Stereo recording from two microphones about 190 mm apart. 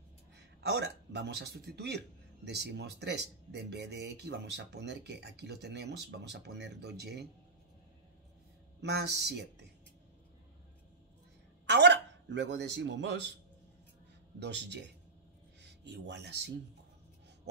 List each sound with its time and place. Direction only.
0.4 s speech: 65° right (ahead or behind)
8.8 s speech: 65° right (ahead or behind)
11.6 s a man's voice: 65° right (ahead or behind)
14.4 s speech: 65° right (ahead or behind)